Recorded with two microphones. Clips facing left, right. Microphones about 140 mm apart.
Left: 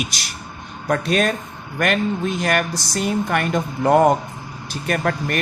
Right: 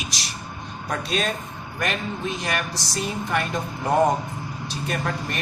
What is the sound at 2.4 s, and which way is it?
A man's voice, 55° left (ahead or behind).